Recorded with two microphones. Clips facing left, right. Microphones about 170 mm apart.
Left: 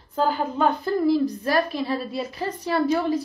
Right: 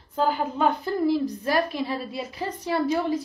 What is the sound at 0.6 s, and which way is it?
A woman's voice, 15° right (ahead or behind).